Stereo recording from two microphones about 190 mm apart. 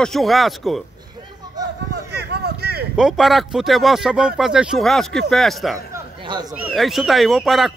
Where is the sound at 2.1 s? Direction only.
60° right (ahead or behind).